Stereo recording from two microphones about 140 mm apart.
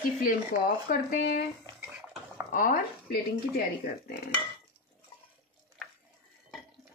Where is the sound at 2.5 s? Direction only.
85° left.